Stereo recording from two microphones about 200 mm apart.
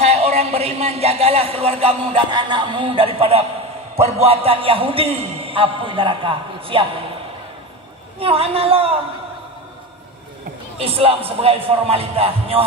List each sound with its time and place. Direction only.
0.0 s a man's voice: 30° right (ahead or behind)
8.2 s a man's voice: 30° right (ahead or behind)
10.8 s a man's voice: 30° right (ahead or behind)